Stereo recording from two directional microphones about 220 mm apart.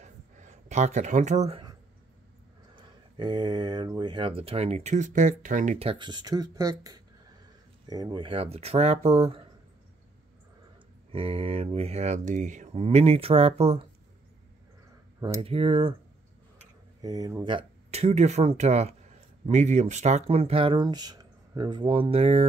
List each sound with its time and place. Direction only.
0.0 s a sound: 35° right (ahead or behind)
2.7 s speech: 20° right (ahead or behind)
11.1 s speech: 25° right (ahead or behind)
15.1 s speech: 20° right (ahead or behind)
17.0 s speech: 15° right (ahead or behind)
17.5 s speech: 25° right (ahead or behind)